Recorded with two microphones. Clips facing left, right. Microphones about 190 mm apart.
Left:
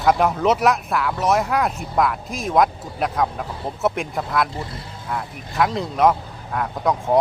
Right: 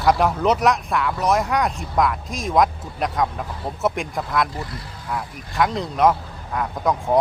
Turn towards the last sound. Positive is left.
turn(degrees=0)  # may be behind; listen again after turning